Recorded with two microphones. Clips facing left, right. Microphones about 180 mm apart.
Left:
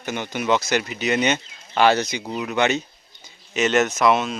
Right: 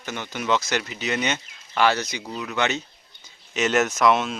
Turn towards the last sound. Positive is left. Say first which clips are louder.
# left 1 dB
turn(degrees=0)  # may be behind; listen again after turning